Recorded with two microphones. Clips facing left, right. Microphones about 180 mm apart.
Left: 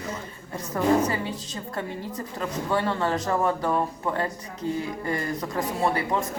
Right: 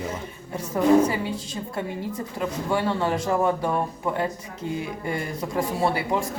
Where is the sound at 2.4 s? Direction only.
5° right (ahead or behind).